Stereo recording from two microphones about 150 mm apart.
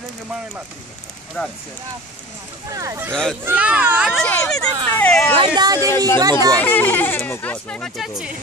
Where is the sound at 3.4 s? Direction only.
10° right (ahead or behind).